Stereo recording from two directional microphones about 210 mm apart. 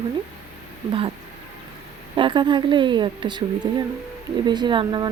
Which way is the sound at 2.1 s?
20° right (ahead or behind).